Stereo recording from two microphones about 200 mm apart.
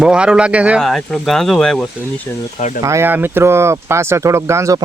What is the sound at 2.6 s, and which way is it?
Speech, 35° left (ahead or behind).